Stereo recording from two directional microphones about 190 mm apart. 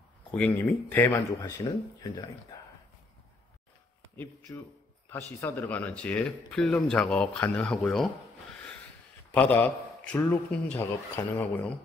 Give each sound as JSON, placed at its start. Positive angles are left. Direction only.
{"t": 0.3, "sound": "speech", "side_deg": 10}
{"t": 2.5, "sound": "a sound", "side_deg": 15}
{"t": 5.4, "sound": "speech", "side_deg": 10}
{"t": 9.3, "sound": "speech", "side_deg": 10}